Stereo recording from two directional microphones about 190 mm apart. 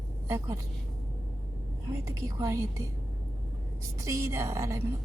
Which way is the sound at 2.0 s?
15° right (ahead or behind).